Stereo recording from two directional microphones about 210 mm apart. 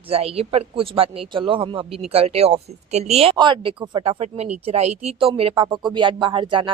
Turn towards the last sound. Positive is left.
turn(degrees=-25)  # may be behind; listen again after turning